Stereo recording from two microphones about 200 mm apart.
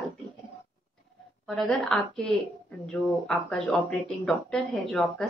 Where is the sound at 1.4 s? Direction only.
Centre (ahead or behind).